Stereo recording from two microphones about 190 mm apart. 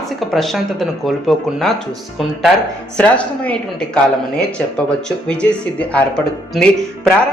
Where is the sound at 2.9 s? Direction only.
5° left (ahead or behind).